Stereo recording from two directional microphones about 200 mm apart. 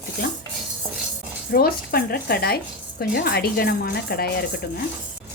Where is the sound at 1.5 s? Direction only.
50° left (ahead or behind).